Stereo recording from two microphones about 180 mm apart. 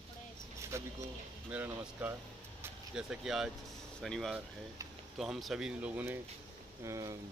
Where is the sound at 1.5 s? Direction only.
10° right (ahead or behind).